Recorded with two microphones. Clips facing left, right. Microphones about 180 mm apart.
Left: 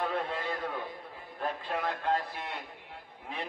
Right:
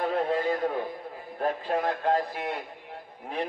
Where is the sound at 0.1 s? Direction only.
40° right (ahead or behind).